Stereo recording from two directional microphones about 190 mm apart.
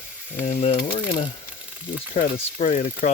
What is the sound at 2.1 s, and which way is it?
Speech, 45° left (ahead or behind).